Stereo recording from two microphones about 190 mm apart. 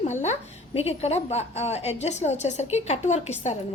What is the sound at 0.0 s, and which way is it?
A woman's voice, 40° left (ahead or behind).